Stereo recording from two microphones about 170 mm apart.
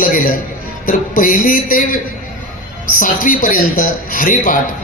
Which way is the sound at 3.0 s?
50° left (ahead or behind).